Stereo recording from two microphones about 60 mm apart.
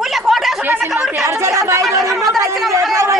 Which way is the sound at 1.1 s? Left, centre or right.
Right.